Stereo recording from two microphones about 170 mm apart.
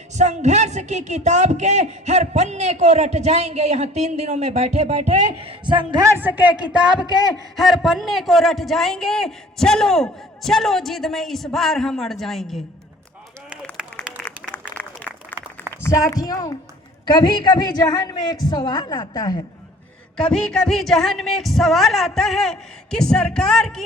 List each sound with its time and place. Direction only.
0.2 s a man's voice: 40° right (ahead or behind); by 12.5 s centre (ahead or behind)
14.3 s applause: 10° left (ahead or behind)
15.8 s a man's voice: 20° left (ahead or behind)
20.1 s a man's voice: 5° left (ahead or behind)